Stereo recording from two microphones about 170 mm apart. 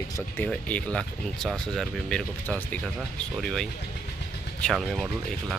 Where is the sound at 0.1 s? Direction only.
10° left (ahead or behind).